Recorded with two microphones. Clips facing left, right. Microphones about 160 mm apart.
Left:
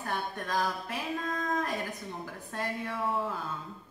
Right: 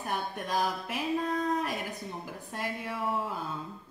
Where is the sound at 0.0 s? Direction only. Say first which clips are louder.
Right 1 dB; 15° right (ahead or behind).